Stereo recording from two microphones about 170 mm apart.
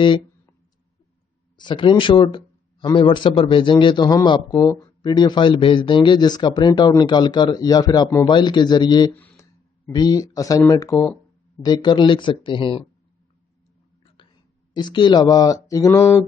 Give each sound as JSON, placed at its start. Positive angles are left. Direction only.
{"t": 1.6, "sound": "speech", "side_deg": 25}
{"t": 9.1, "sound": "a sound", "side_deg": 10}
{"t": 9.9, "sound": "speech", "side_deg": 20}
{"t": 14.0, "sound": "speech", "side_deg": 30}